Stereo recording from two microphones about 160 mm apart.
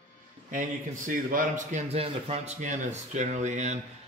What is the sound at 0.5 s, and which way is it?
A man's voice, 60° right (ahead or behind).